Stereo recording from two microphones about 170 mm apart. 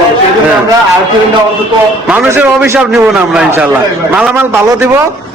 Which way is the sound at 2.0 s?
10° right (ahead or behind).